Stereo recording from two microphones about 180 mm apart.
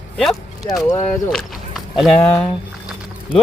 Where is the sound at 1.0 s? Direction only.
15° left (ahead or behind).